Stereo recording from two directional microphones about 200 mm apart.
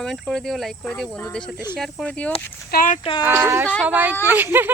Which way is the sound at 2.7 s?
45° left (ahead or behind).